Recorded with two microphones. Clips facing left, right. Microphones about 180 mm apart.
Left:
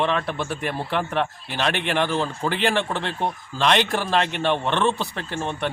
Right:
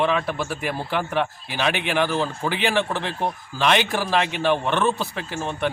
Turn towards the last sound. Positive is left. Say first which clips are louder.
# even
turn(degrees=0)  # may be behind; listen again after turning